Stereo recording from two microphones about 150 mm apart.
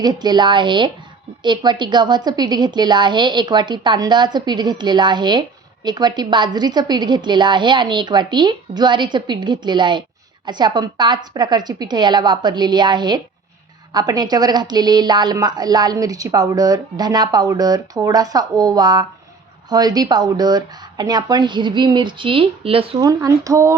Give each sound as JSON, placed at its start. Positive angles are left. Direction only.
{"t": 0.0, "sound": "a woman's voice", "side_deg": -30}
{"t": 23.0, "sound": "a woman's voice", "side_deg": -25}